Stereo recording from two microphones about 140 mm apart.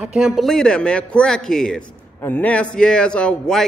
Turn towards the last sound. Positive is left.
turn(degrees=5)  # may be behind; listen again after turning